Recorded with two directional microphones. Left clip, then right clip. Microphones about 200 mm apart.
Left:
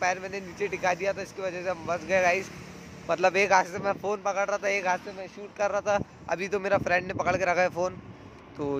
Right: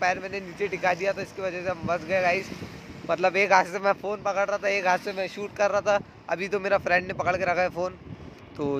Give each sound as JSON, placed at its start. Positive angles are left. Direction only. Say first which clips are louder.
{"t": 0.0, "sound": "speech", "louder": "right 2 dB", "side_deg": 0}
{"t": 4.0, "sound": "speech", "louder": "right 1 dB", "side_deg": 5}
{"t": 5.0, "sound": "speech", "louder": "right 9 dB", "side_deg": -30}
{"t": 5.6, "sound": "speech", "louder": "right 3 dB", "side_deg": -10}
{"t": 8.6, "sound": "speech", "louder": "right 3 dB", "side_deg": -5}